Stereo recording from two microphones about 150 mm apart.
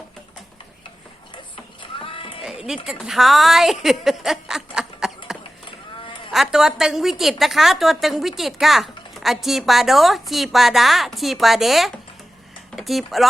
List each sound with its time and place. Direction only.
1.8 s music: 35° left (ahead or behind)
2.4 s a sound: 5° right (ahead or behind)
2.8 s a woman's voice: centre (ahead or behind)
6.3 s a woman's voice: centre (ahead or behind)